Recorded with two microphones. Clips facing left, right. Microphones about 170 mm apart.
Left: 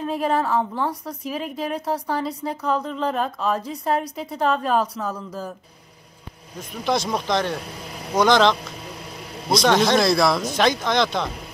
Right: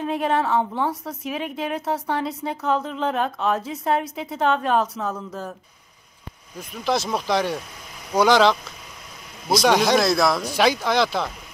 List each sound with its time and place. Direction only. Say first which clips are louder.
0.0 s a woman's voice: even; centre (ahead or behind)
6.8 s a woman's voice: even; 5° right (ahead or behind)